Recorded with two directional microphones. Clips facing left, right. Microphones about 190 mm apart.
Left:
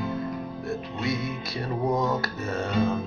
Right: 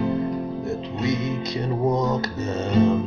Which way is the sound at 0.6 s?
20° right (ahead or behind).